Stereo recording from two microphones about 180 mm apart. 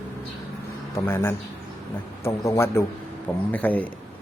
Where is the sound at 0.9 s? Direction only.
15° left (ahead or behind).